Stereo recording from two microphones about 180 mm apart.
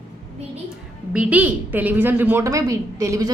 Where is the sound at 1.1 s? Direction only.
10° right (ahead or behind).